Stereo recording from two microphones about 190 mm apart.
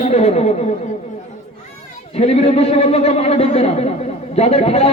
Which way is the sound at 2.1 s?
35° left (ahead or behind).